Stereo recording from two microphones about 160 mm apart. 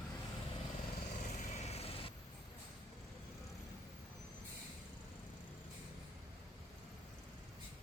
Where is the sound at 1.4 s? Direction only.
40° left (ahead or behind).